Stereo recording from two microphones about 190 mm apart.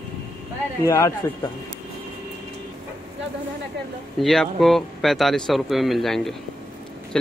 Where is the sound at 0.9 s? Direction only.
15° left (ahead or behind).